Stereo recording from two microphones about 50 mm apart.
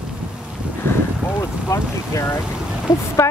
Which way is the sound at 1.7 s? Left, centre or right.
Left.